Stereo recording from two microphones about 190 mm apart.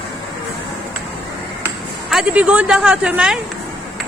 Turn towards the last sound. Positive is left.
turn(degrees=-5)  # may be behind; listen again after turning